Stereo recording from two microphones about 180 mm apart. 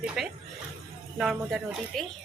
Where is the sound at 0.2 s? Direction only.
Centre (ahead or behind).